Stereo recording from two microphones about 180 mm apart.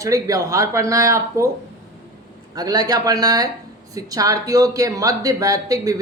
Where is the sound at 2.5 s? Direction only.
20° right (ahead or behind).